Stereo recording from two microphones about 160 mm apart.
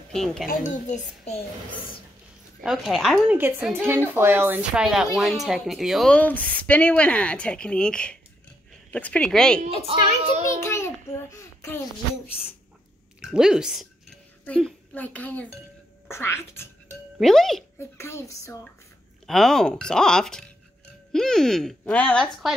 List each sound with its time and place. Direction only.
0.1 s speech: centre (ahead or behind)
0.5 s a child's voice: 50° left (ahead or behind)
2.6 s speech: centre (ahead or behind)
3.3 s a woman's voice: 15° right (ahead or behind); by 9.6 s 5° left (ahead or behind)
9.8 s a child's voice: 35° right (ahead or behind)
10.6 s a sound: 15° left (ahead or behind)
13.2 s speech: 5° right (ahead or behind)
14.4 s a child's voice: 10° left (ahead or behind)
17.2 s speech: centre (ahead or behind)
17.7 s speech: 15° left (ahead or behind)
19.2 s speech: centre (ahead or behind)